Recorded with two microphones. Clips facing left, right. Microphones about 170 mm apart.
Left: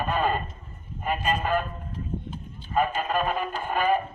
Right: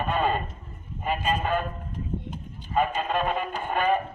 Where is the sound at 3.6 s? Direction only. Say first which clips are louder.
Even; 5° left (ahead or behind).